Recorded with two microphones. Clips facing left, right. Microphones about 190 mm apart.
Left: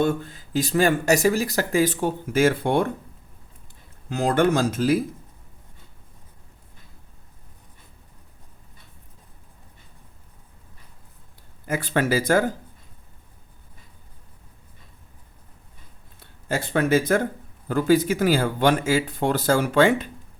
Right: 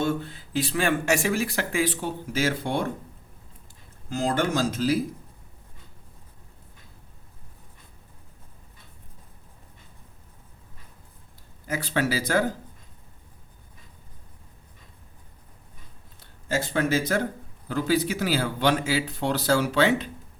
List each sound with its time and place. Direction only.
0.0 s speech: 45° left (ahead or behind)
4.1 s speech: 60° left (ahead or behind)
11.7 s speech: 50° left (ahead or behind)
16.5 s speech: 55° left (ahead or behind)